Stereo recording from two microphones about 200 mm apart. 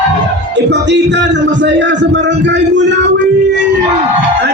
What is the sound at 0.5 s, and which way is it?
Speech, 60° right (ahead or behind).